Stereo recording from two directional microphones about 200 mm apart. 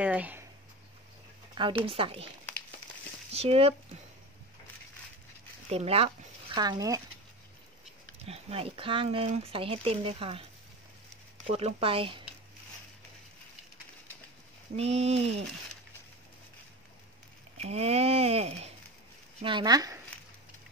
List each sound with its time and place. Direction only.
0.0 s speech: 5° right (ahead or behind)
1.5 s a sound: 25° right (ahead or behind)
1.9 s speech: 25° right (ahead or behind)
3.3 s speech: 30° right (ahead or behind)
5.7 s speech: 30° right (ahead or behind)
8.3 s speech: 30° right (ahead or behind)
11.4 s speech: 30° right (ahead or behind)
14.8 s a sound: 30° right (ahead or behind)
17.6 s a sound: 30° right (ahead or behind)
19.4 s speech: 20° right (ahead or behind)